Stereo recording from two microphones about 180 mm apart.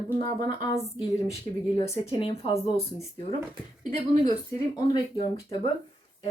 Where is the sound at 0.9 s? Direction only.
30° left (ahead or behind).